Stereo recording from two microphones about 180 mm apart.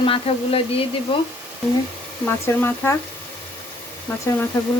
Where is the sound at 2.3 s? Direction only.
15° left (ahead or behind).